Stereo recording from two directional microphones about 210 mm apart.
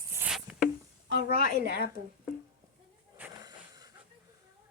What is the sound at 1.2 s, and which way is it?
Speech, 45° left (ahead or behind).